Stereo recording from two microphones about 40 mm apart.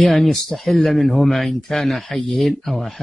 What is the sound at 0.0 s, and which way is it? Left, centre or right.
Speech, centre.